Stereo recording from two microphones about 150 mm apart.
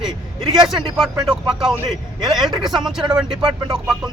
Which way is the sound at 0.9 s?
5° right (ahead or behind).